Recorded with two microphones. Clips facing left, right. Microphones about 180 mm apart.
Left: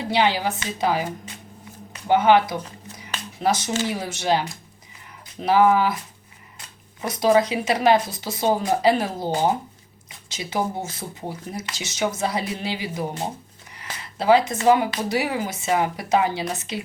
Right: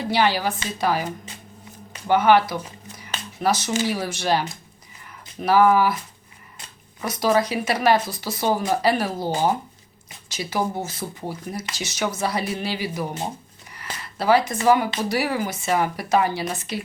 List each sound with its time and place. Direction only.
0.1 s speech: 20° left (ahead or behind)
2.0 s speech: 20° left (ahead or behind)
3.8 s speech: 20° left (ahead or behind)
7.0 s speech: 25° left (ahead or behind)
13.7 s a sound: 20° left (ahead or behind)
15.1 s speech: 20° left (ahead or behind)